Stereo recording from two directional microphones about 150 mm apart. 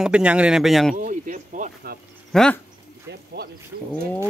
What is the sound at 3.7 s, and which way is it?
Speech, 90° right.